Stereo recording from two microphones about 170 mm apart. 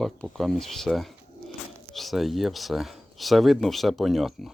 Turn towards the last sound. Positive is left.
turn(degrees=0)  # may be behind; listen again after turning